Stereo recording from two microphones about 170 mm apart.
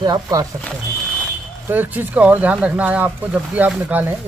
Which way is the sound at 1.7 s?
10° right (ahead or behind).